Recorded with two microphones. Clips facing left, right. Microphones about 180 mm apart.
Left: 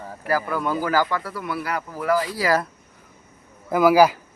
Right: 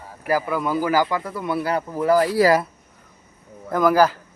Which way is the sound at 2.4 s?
55° right (ahead or behind).